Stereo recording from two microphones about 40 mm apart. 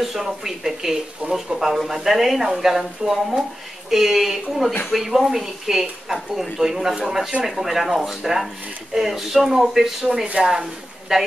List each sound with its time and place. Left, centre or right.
0.0 s speech: centre
7.3 s speech: right
7.7 s speech: centre